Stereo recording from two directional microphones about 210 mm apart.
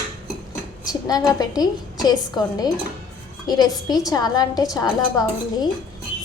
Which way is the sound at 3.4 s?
20° left (ahead or behind).